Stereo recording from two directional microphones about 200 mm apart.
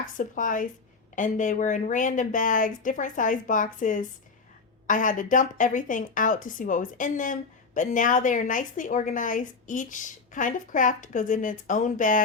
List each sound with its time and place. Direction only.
0.0 s speech: 40° left (ahead or behind)